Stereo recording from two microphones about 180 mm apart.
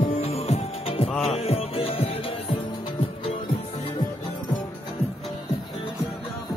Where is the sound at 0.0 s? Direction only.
35° left (ahead or behind).